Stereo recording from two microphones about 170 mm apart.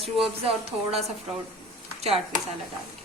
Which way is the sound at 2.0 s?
35° right (ahead or behind).